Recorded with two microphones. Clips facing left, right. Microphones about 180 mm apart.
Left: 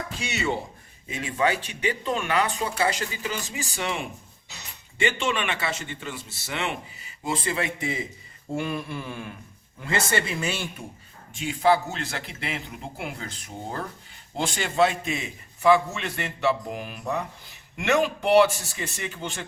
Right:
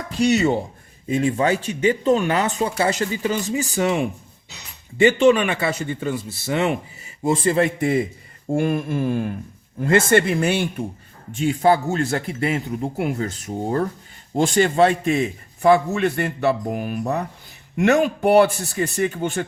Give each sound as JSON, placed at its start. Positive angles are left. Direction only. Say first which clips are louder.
{"t": 0.2, "sound": "a man's voice", "louder": "right 12 dB", "side_deg": -40}
{"t": 11.3, "sound": "a man's voice", "louder": "right 4 dB", "side_deg": -45}